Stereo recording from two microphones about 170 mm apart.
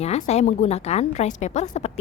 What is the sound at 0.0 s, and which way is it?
Speech, 40° left (ahead or behind).